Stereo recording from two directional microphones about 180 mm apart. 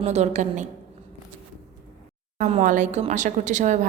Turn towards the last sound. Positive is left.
turn(degrees=-40)  # may be behind; listen again after turning